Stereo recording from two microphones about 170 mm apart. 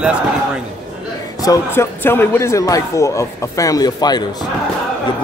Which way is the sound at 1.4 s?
20° left (ahead or behind).